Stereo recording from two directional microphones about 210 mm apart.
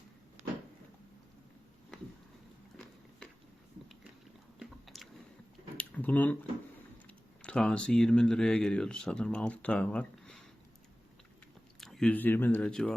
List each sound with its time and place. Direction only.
4.6 s biting: centre (ahead or behind)
5.7 s a sound: 5° left (ahead or behind)
7.1 s speech: 5° left (ahead or behind)
11.8 s speech: centre (ahead or behind)